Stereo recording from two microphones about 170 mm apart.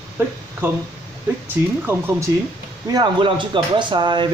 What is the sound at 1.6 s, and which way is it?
Speech, 15° right (ahead or behind).